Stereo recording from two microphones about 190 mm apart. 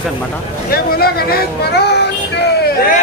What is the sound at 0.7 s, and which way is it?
Speech, 55° left (ahead or behind).